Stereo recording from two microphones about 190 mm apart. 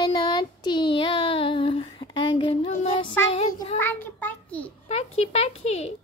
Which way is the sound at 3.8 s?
10° left (ahead or behind).